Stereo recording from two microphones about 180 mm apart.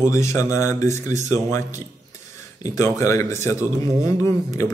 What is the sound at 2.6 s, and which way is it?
A man's voice, 15° left (ahead or behind).